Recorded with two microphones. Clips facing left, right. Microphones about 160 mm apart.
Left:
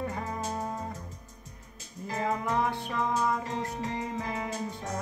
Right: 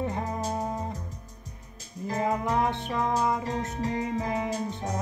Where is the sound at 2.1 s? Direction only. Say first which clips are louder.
Right 3 dB; 15° right (ahead or behind).